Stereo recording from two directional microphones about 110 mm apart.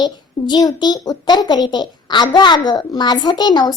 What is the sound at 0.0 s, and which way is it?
A woman's voice, 40° left (ahead or behind).